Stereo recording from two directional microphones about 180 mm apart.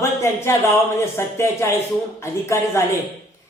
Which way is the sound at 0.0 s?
15° left (ahead or behind).